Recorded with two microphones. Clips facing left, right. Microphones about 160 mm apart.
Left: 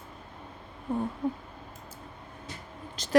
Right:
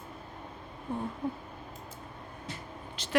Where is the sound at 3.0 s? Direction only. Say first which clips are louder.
Even; 40° left (ahead or behind).